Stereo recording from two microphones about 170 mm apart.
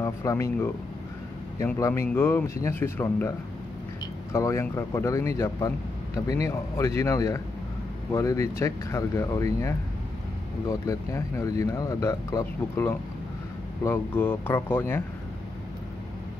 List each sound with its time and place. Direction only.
0.0 s speech: 15° left (ahead or behind)
6.4 s a man's voice: 15° left (ahead or behind)